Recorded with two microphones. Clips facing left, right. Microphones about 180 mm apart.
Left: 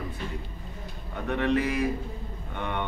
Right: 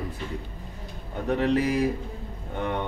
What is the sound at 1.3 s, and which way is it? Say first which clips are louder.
Speech: right 3 dB; 35° right (ahead or behind).